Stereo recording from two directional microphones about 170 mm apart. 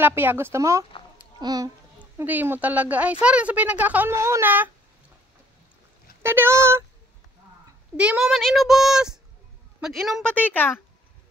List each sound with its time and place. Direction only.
0.0 s a woman's voice: 10° right (ahead or behind)
2.0 s a woman's voice: 10° right (ahead or behind)
6.2 s a woman's voice: 15° right (ahead or behind)
8.0 s speech: 5° right (ahead or behind)
10.3 s speech: 10° left (ahead or behind)